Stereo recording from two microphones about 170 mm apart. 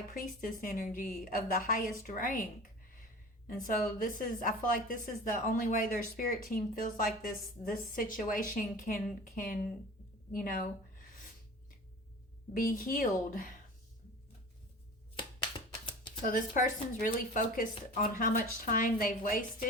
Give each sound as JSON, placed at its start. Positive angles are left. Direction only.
{"t": 0.1, "sound": "a woman's voice", "side_deg": 50}
{"t": 3.5, "sound": "a woman's voice", "side_deg": 55}
{"t": 10.3, "sound": "a sound", "side_deg": 55}
{"t": 12.5, "sound": "a woman's voice", "side_deg": 55}
{"t": 16.2, "sound": "a woman's voice", "side_deg": 50}